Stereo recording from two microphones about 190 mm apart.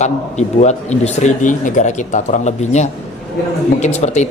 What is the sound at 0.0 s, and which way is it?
Speech, 35° left (ahead or behind).